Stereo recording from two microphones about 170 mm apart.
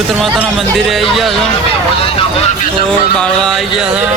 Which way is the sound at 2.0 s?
35° left (ahead or behind).